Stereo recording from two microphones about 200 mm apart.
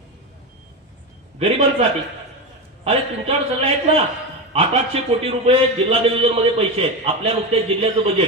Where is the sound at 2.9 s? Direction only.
30° right (ahead or behind).